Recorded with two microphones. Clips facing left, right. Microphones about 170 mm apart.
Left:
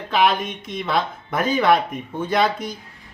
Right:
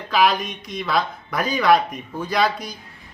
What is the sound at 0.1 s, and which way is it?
Music, 25° left (ahead or behind).